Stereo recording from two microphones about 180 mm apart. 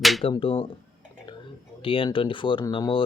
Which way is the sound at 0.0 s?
Centre (ahead or behind).